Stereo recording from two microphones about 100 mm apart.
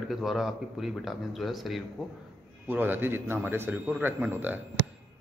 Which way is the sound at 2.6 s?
20° right (ahead or behind).